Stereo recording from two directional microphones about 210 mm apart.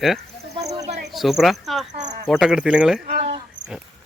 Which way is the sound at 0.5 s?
30° right (ahead or behind).